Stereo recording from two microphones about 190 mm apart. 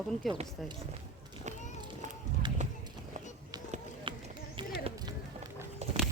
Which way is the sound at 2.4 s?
25° right (ahead or behind).